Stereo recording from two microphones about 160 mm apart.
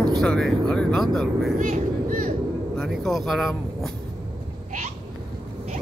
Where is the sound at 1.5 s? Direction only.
55° right (ahead or behind).